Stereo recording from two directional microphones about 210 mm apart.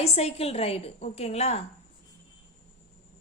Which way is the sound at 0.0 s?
30° left (ahead or behind).